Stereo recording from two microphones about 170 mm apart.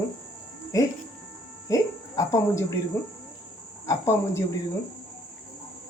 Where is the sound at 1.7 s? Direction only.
20° left (ahead or behind).